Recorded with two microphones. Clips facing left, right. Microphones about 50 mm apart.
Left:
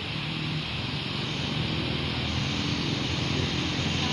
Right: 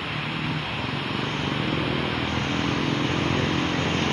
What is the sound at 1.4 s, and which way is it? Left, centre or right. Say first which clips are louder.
Vehicle: right 5 dB; right.